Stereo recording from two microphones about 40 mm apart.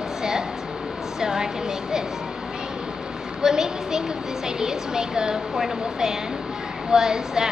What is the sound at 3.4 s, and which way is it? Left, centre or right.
A woman's voice, centre.